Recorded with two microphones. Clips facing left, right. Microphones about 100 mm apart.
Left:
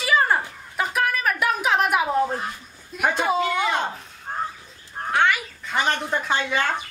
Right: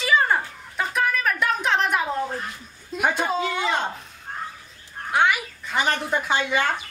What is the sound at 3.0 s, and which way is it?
Speech, 5° left (ahead or behind).